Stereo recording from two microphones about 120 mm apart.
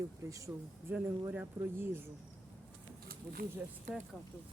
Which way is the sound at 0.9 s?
15° right (ahead or behind).